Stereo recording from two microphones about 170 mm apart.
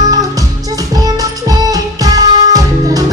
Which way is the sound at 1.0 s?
20° right (ahead or behind).